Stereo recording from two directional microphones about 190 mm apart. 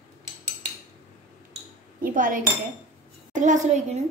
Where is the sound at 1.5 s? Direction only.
45° right (ahead or behind).